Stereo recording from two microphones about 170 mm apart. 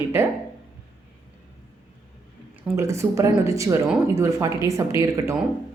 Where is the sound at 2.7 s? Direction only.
15° right (ahead or behind).